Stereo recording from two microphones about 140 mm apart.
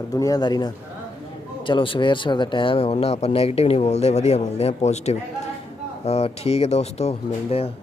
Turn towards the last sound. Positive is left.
turn(degrees=50)  # may be behind; listen again after turning